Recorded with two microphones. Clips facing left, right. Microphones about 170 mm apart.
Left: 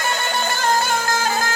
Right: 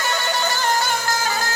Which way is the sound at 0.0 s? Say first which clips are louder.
Even; 50° left (ahead or behind).